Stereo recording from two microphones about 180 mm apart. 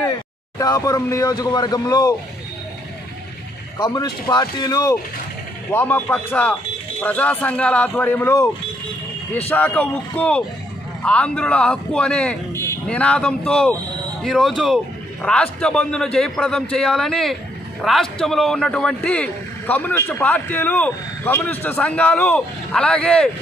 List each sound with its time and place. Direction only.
0.6 s speech: 20° left (ahead or behind)
3.7 s speech: 20° left (ahead or behind)
9.5 s speech: 10° left (ahead or behind)